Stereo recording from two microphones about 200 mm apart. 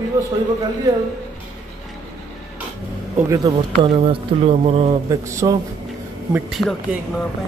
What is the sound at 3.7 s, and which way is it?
Speech, 30° right (ahead or behind).